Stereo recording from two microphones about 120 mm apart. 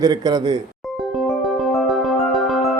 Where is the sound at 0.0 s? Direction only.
35° right (ahead or behind).